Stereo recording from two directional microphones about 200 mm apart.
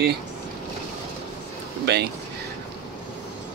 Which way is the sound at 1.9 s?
55° right (ahead or behind).